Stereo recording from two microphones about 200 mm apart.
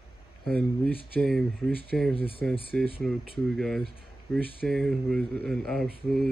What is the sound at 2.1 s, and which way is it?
Speech, 25° left (ahead or behind).